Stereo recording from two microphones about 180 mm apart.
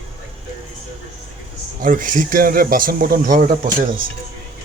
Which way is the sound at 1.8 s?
50° right (ahead or behind).